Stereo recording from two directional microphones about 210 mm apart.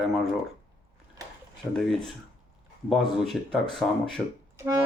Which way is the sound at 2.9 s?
Centre (ahead or behind).